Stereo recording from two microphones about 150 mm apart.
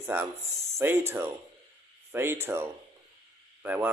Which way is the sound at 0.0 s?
15° right (ahead or behind).